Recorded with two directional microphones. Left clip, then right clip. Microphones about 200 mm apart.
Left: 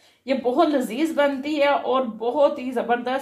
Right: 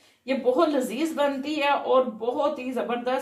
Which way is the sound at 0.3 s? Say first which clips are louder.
Left 2 dB; 50° left (ahead or behind).